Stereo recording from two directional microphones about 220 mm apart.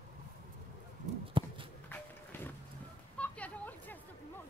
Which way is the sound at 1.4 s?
25° right (ahead or behind).